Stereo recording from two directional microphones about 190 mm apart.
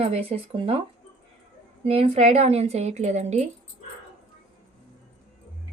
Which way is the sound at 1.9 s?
30° right (ahead or behind).